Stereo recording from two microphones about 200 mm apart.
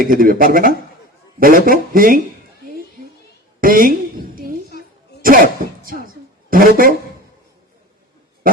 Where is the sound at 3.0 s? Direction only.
45° right (ahead or behind).